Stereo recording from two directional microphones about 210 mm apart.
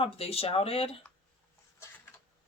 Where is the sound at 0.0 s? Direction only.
25° left (ahead or behind).